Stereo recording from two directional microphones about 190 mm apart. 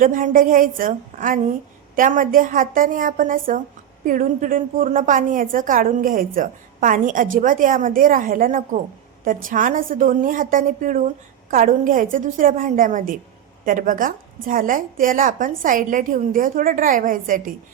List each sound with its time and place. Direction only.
0.0 s a woman's voice: 45° right (ahead or behind)